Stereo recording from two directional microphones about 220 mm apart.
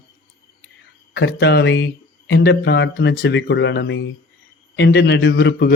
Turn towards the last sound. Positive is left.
turn(degrees=50)  # may be behind; listen again after turning